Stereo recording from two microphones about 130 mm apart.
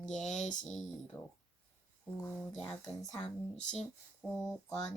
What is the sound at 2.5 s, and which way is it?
Speech, 5° left (ahead or behind).